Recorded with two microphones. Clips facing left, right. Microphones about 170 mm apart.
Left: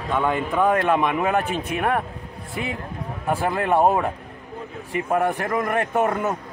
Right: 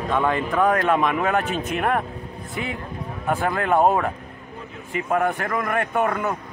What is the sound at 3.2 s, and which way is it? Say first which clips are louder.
Speech: even; 15° left (ahead or behind).